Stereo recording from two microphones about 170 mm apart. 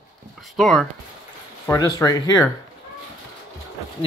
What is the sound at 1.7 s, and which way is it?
Speech, 20° left (ahead or behind).